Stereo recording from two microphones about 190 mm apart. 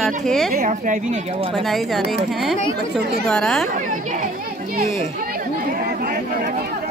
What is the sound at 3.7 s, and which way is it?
Chatter, 40° right (ahead or behind).